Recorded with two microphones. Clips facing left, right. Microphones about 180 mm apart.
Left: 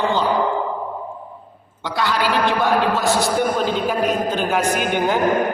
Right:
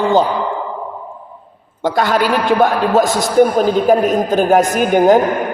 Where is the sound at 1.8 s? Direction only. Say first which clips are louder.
Right 6 dB; 50° right (ahead or behind).